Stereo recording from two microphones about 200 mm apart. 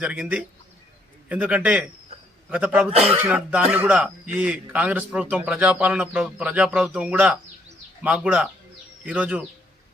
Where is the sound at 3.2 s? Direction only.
5° right (ahead or behind).